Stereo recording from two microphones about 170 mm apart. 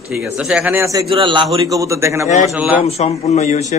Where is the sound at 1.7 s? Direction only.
20° right (ahead or behind).